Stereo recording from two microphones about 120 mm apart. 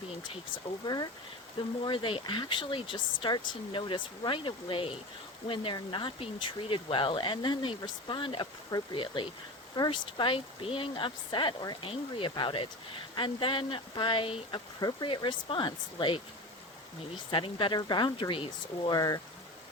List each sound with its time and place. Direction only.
1.8 s speech: 45° left (ahead or behind)
14.8 s speech: 35° left (ahead or behind)
15.1 s speech: 45° left (ahead or behind)
17.3 s speech: 45° left (ahead or behind)
18.9 s speech: 30° left (ahead or behind)